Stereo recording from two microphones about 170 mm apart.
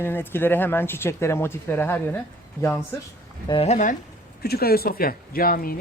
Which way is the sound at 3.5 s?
40° left (ahead or behind).